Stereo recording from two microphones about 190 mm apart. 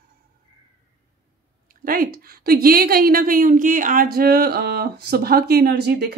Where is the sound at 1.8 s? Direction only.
50° right (ahead or behind).